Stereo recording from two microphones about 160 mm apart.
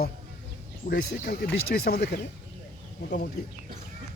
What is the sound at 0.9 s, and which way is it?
Speech, 65° left (ahead or behind).